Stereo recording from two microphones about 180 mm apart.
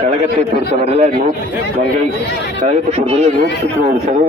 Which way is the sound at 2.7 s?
35° right (ahead or behind).